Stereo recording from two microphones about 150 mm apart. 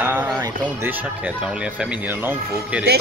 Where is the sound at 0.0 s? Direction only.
15° right (ahead or behind).